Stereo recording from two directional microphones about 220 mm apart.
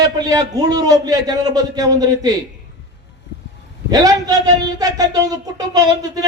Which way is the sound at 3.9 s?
15° right (ahead or behind).